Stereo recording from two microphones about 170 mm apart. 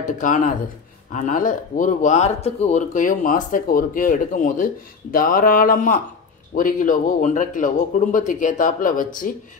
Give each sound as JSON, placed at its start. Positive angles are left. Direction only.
{"t": 0.0, "sound": "speech", "side_deg": 50}